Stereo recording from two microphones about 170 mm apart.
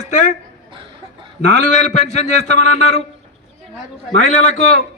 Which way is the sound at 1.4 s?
45° left (ahead or behind).